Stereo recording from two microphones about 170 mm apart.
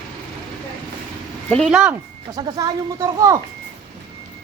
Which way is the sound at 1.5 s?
5° left (ahead or behind).